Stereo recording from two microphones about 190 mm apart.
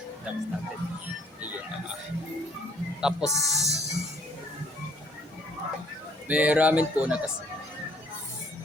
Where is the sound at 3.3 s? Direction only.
15° left (ahead or behind).